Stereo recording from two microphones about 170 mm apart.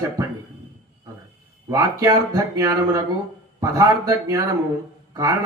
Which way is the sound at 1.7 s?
15° right (ahead or behind).